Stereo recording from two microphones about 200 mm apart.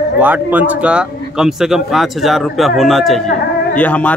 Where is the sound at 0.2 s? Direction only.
10° right (ahead or behind).